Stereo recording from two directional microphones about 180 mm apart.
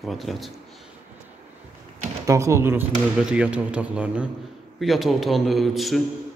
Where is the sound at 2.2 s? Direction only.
15° right (ahead or behind); by 6.0 s centre (ahead or behind).